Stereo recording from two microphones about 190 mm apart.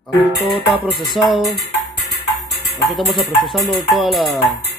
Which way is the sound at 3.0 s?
Centre (ahead or behind).